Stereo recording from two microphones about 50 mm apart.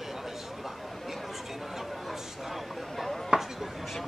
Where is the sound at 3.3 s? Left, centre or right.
Centre.